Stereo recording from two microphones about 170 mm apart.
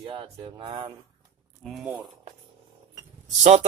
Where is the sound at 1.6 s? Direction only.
Centre (ahead or behind).